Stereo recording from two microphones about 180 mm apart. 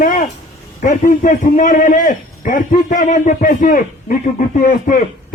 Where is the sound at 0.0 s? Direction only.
45° left (ahead or behind).